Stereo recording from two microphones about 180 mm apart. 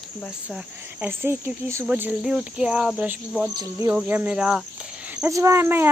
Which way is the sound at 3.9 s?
10° right (ahead or behind).